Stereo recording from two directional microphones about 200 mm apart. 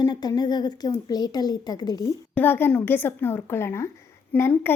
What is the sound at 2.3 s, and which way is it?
A woman's voice, 10° left (ahead or behind).